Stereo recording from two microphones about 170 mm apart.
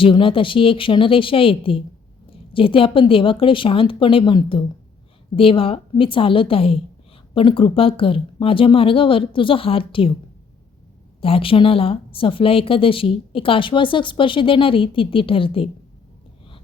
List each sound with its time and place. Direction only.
0.0 s speech: 30° left (ahead or behind)
11.2 s speech: 30° left (ahead or behind)